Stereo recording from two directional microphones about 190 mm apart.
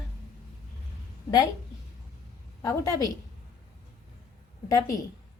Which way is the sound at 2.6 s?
15° left (ahead or behind).